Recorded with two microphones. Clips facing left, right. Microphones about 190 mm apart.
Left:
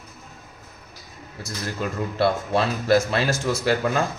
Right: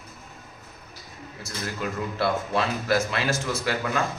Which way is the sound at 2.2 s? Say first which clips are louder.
Left 4 dB; 35° left (ahead or behind).